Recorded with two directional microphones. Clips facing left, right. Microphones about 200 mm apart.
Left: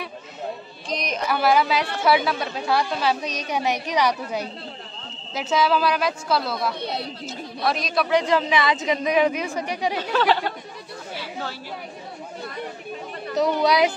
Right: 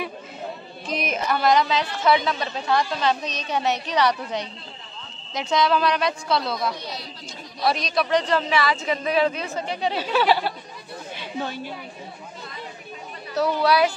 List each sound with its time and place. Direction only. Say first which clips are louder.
0.8 s a sound: right 1 dB; 5° right (ahead or behind)
1.3 s a woman's voice: even; 5° left (ahead or behind)
6.8 s speech: left 6 dB; 60° left (ahead or behind)
7.6 s a woman's voice: right 1 dB; centre (ahead or behind)
8.2 s a woman's voice: left 1 dB; 10° left (ahead or behind)
9.9 s speech: right 1 dB; 10° right (ahead or behind)
11.1 s chatter: right 3 dB; 20° right (ahead or behind)
13.6 s a woman's voice: right 1 dB; 15° left (ahead or behind)